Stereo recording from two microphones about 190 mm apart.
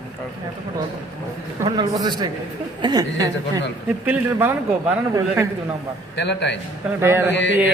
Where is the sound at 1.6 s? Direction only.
20° right (ahead or behind).